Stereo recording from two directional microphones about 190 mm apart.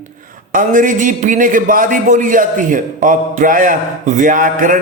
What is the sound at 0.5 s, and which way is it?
A man's voice, 45° right (ahead or behind).